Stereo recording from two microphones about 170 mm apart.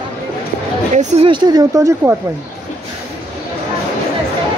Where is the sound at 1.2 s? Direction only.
25° right (ahead or behind).